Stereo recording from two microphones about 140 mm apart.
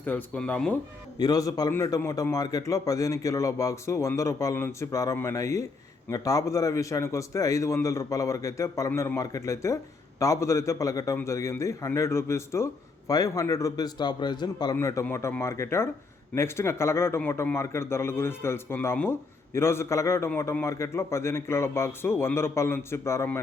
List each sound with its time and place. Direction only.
0.0 s a man's voice: 10° left (ahead or behind)
1.2 s a man's voice: 25° left (ahead or behind)